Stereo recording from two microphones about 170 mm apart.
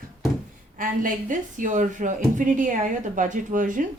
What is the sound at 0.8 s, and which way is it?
Speech, 50° right (ahead or behind).